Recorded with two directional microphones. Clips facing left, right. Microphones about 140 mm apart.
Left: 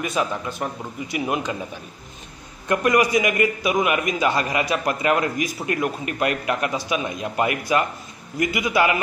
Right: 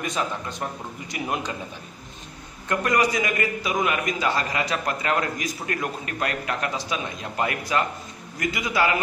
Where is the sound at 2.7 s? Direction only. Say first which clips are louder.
Left 4 dB; 15° left (ahead or behind).